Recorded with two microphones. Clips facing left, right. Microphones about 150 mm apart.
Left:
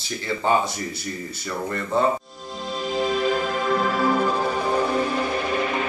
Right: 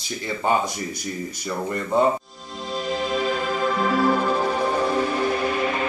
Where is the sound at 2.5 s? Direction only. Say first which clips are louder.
Right 1 dB; centre (ahead or behind).